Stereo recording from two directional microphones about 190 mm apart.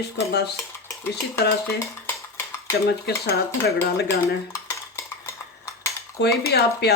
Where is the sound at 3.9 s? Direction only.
55° left (ahead or behind).